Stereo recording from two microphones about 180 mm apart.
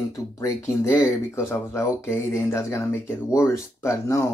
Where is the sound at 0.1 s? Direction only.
15° left (ahead or behind).